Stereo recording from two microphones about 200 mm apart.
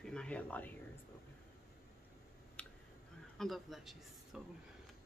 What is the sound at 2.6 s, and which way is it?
Clicking, 5° left (ahead or behind).